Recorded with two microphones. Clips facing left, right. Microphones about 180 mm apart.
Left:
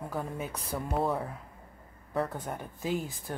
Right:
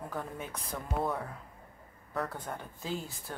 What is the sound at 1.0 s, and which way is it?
Speech, 30° left (ahead or behind).